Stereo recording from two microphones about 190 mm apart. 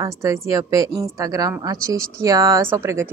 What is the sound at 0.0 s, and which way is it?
A woman's voice, 15° right (ahead or behind).